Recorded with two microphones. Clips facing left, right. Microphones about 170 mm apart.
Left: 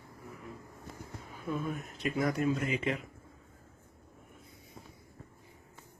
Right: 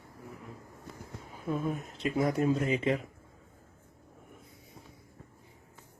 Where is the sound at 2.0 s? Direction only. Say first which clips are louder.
Right 3 dB; 25° right (ahead or behind).